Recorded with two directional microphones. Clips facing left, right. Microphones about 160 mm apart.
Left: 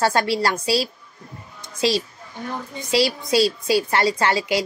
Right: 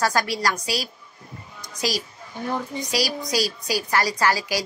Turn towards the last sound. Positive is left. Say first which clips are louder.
# left 2 dB
turn(degrees=25)  # may be behind; listen again after turning